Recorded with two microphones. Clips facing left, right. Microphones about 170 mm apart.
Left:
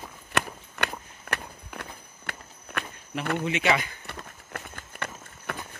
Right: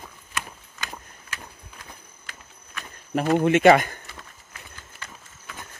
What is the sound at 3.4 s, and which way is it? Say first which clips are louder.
Speech: right 11 dB; 50° right (ahead or behind).